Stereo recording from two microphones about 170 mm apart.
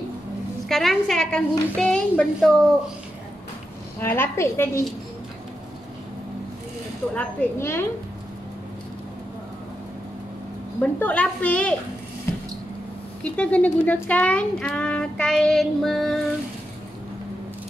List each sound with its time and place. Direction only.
0.7 s speech: centre (ahead or behind)
4.0 s a woman's voice: 15° left (ahead or behind)
7.2 s a woman's voice: 15° left (ahead or behind)
10.8 s a woman's voice: 10° left (ahead or behind)
12.3 s a sound: 15° left (ahead or behind)
13.2 s speech: 10° left (ahead or behind)